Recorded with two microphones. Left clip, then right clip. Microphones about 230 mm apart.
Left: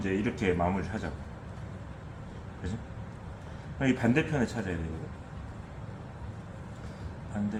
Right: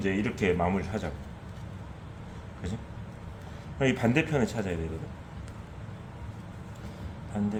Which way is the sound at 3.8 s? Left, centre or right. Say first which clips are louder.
Right 2 dB; right.